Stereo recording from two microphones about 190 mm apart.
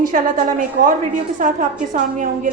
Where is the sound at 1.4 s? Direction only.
40° right (ahead or behind).